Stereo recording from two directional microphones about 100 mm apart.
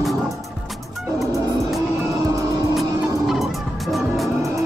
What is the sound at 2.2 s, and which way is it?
Vehicle, 35° right (ahead or behind).